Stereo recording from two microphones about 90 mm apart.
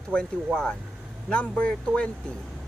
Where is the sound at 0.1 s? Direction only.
10° left (ahead or behind).